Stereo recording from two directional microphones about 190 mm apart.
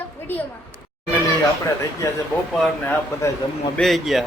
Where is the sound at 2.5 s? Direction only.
5° left (ahead or behind).